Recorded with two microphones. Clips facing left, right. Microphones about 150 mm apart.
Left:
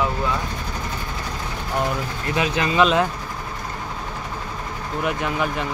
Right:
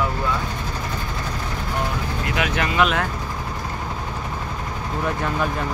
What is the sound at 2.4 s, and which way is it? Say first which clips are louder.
Speech: left 2 dB; 25° left (ahead or behind).